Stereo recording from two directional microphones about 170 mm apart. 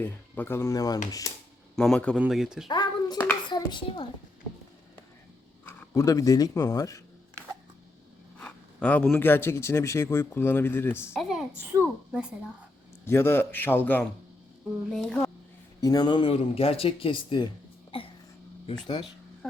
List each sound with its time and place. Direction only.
0.0 s speech: 10° left (ahead or behind)
1.7 s speech: 5° left (ahead or behind)
2.6 s a sound: 25° left (ahead or behind)
3.5 s speech: 25° left (ahead or behind)
5.6 s speech: 20° left (ahead or behind)
8.4 s speech: 5° left (ahead or behind)
11.1 s a sound: centre (ahead or behind)
11.7 s a woman's voice: 10° right (ahead or behind)
13.1 s speech: 15° left (ahead or behind)
15.8 s speech: 20° left (ahead or behind)
17.9 s a sound: 30° left (ahead or behind)